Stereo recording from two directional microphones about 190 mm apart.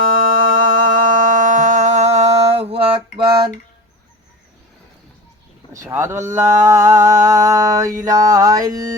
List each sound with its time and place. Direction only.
0.0 s music: 45° right (ahead or behind); by 3.0 s 30° right (ahead or behind)
3.2 s a sound: 55° right (ahead or behind)
5.7 s speech: 15° right (ahead or behind)
8.0 s mantra: 20° right (ahead or behind)